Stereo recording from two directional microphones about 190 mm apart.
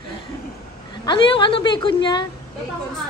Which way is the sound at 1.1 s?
25° left (ahead or behind).